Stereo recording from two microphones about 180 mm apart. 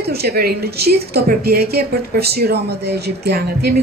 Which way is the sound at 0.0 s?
60° right (ahead or behind).